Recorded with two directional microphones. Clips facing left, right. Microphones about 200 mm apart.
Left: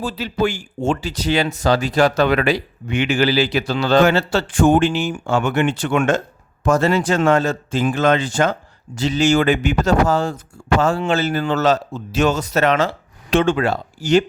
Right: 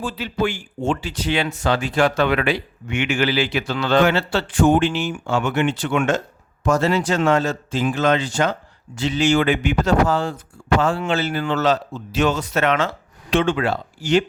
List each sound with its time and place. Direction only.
0.0 s speech: 40° left (ahead or behind)